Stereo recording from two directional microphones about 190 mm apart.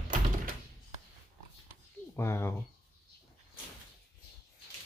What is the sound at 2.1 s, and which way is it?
Speech, 15° left (ahead or behind).